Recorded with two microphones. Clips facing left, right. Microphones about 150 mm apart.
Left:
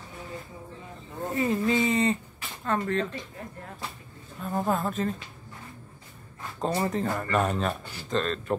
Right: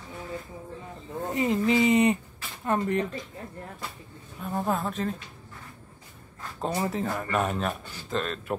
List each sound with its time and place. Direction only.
1.3 s speech: 20° right (ahead or behind)
4.4 s speech: centre (ahead or behind)
6.6 s speech: 5° right (ahead or behind)